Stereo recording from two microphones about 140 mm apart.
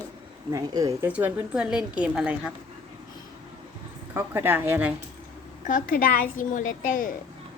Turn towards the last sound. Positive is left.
turn(degrees=70)  # may be behind; listen again after turning